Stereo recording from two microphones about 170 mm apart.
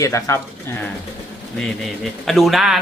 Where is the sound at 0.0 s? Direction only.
20° left (ahead or behind).